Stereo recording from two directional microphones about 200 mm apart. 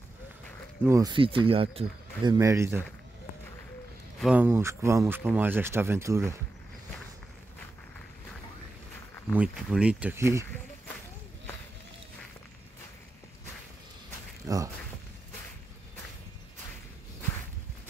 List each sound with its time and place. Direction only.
0.8 s speech: 15° right (ahead or behind)
2.3 s speech: 15° right (ahead or behind)
4.2 s speech: 5° right (ahead or behind)
9.3 s speech: 5° right (ahead or behind)
14.5 s a sound: 15° right (ahead or behind)